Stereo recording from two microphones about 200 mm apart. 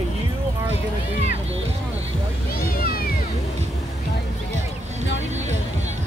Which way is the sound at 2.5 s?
50° left (ahead or behind).